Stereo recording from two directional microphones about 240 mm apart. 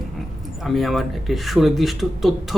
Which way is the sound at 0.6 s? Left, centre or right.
Centre.